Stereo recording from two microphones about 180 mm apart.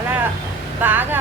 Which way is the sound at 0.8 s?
10° right (ahead or behind).